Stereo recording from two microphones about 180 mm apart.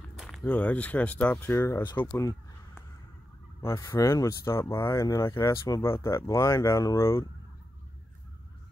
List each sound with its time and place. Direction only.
0.2 s speech: centre (ahead or behind); by 2.0 s 20° left (ahead or behind)
2.0 s fowl: 15° left (ahead or behind)
3.6 s speech: 15° left (ahead or behind)